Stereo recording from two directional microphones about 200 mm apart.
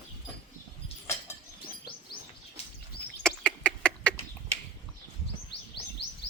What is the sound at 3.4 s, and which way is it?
Bird, 5° left (ahead or behind).